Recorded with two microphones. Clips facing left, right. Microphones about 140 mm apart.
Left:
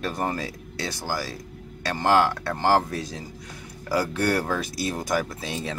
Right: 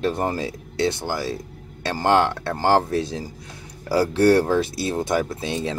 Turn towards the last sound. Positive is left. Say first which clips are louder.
# right 5 dB
turn(degrees=-25)  # may be behind; listen again after turning